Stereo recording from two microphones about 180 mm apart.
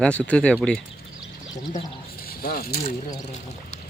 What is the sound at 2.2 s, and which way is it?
Speech, 55° left (ahead or behind).